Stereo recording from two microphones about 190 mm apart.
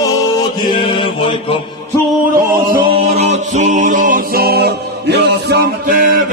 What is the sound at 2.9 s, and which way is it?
Music, 35° right (ahead or behind).